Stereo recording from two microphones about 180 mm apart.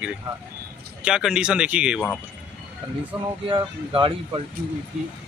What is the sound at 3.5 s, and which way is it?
Speech, 30° right (ahead or behind).